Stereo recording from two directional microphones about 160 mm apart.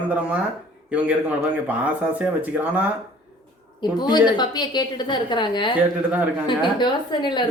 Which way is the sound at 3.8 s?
25° left (ahead or behind).